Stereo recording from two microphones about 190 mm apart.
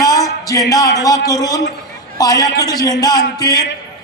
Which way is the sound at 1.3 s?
20° left (ahead or behind).